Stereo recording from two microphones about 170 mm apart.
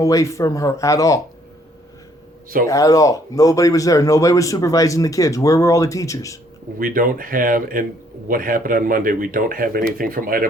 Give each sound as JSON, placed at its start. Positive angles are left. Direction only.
{"t": 0.0, "sound": "speech", "side_deg": 20}
{"t": 2.6, "sound": "speech", "side_deg": 20}
{"t": 6.7, "sound": "speech", "side_deg": -55}